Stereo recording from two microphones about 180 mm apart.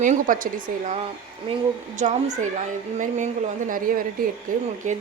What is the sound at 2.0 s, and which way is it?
A woman's voice, 40° right (ahead or behind).